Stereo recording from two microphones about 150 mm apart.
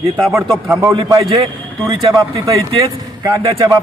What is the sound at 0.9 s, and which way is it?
A man's voice, 30° right (ahead or behind).